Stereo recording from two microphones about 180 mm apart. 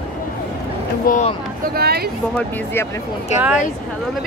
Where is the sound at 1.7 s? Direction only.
60° right (ahead or behind).